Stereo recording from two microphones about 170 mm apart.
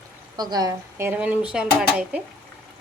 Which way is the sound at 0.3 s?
25° right (ahead or behind).